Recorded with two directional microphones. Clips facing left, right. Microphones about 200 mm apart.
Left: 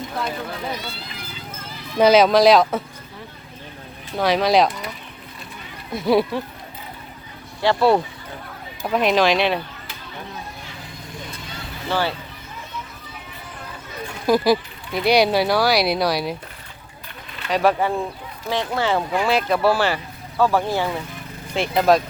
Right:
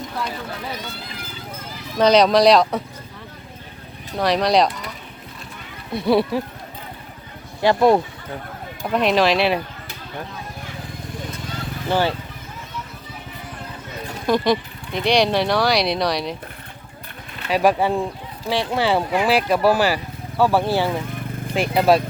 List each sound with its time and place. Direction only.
2.0 s speech: 5° left (ahead or behind)
4.2 s speech: centre (ahead or behind)
5.9 s speech: centre (ahead or behind)
7.6 s speech: 15° right (ahead or behind)
8.8 s speech: centre (ahead or behind)
11.9 s speech: 15° right (ahead or behind)
14.3 s speech: 5° left (ahead or behind)
17.5 s speech: 15° right (ahead or behind)